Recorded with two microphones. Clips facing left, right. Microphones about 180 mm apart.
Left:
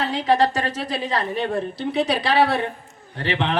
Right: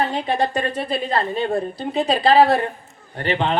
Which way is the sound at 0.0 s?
80° left.